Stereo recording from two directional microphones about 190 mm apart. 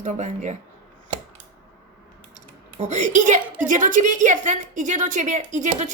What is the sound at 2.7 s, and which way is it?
A woman's voice, 40° right (ahead or behind).